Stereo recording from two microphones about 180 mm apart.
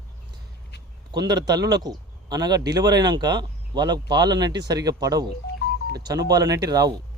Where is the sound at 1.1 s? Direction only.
25° right (ahead or behind).